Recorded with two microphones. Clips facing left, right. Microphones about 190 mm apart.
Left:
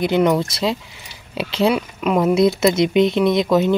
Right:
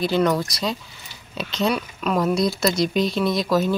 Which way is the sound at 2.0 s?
15° left (ahead or behind).